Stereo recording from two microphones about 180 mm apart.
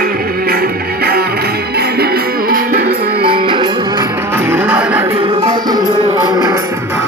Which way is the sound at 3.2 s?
30° right (ahead or behind).